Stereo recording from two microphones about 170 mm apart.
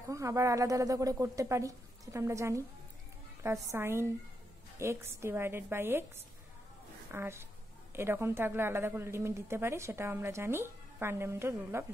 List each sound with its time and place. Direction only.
0.1 s a woman's voice: 20° right (ahead or behind)
3.7 s a woman's voice: 15° right (ahead or behind)
7.1 s a woman's voice: 15° right (ahead or behind)